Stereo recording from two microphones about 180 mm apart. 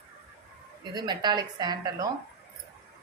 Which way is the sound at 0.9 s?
25° right (ahead or behind).